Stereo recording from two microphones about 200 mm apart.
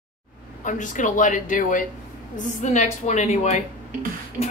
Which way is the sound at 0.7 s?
40° left (ahead or behind).